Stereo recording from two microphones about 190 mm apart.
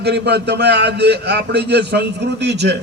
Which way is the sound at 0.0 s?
60° right (ahead or behind).